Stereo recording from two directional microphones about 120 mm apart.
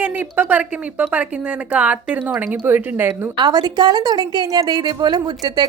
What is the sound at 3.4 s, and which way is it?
Speech, 35° right (ahead or behind).